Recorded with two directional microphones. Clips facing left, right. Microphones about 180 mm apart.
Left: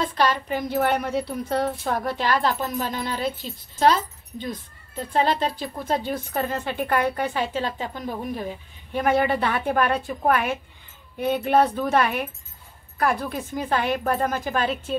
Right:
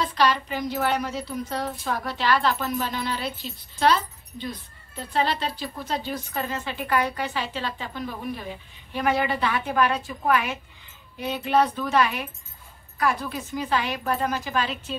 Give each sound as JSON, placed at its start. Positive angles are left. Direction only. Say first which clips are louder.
{"t": 0.0, "sound": "speech", "louder": "even", "side_deg": 50}
{"t": 2.0, "sound": "speech", "louder": "right 1 dB", "side_deg": 45}